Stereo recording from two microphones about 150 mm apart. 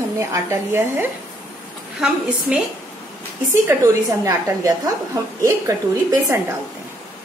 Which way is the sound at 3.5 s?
20° right (ahead or behind).